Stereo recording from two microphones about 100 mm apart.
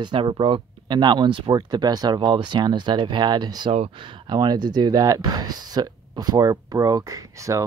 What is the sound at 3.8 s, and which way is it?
Speech, 60° right (ahead or behind).